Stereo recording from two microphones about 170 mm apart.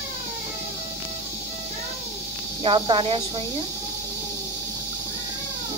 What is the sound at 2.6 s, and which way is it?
Speech, 30° right (ahead or behind).